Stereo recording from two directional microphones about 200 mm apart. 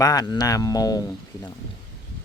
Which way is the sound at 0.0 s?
20° left (ahead or behind).